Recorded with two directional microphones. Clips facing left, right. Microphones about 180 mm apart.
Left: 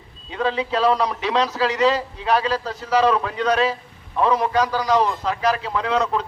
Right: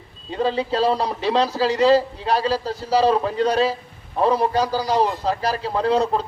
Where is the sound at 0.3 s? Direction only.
35° right (ahead or behind).